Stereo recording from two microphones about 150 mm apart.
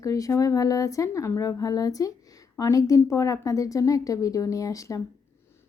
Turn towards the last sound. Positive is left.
turn(degrees=20)  # may be behind; listen again after turning